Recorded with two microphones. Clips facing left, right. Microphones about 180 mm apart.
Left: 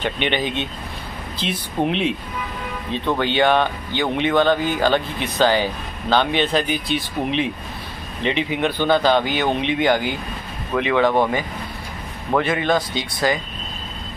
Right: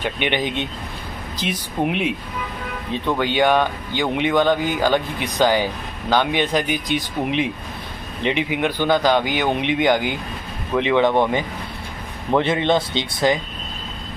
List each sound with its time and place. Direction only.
0.0 s speech: 15° right (ahead or behind)
3.2 s speech: 10° right (ahead or behind)
12.4 s speech: 25° right (ahead or behind)